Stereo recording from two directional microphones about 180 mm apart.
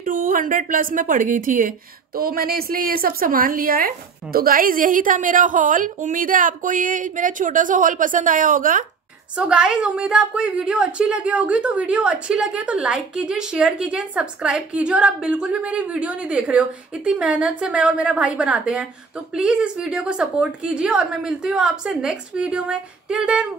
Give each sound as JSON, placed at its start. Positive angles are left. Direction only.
{"t": 0.0, "sound": "a woman's voice", "side_deg": -50}
{"t": 9.4, "sound": "a woman's voice", "side_deg": -5}